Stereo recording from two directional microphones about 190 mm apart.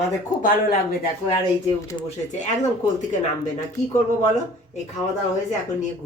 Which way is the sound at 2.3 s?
40° left (ahead or behind).